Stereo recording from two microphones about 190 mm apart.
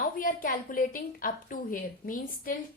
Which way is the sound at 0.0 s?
45° left (ahead or behind).